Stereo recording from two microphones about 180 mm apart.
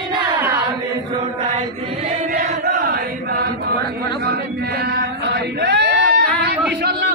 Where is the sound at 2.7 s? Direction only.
55° right (ahead or behind).